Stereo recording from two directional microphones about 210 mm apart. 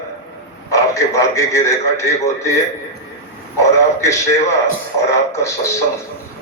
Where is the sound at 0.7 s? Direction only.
15° left (ahead or behind).